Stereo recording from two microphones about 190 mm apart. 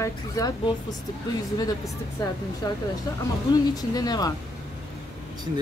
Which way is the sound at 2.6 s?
20° left (ahead or behind).